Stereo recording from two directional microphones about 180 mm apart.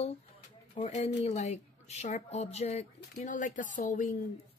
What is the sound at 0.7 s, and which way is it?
Speech, 35° left (ahead or behind).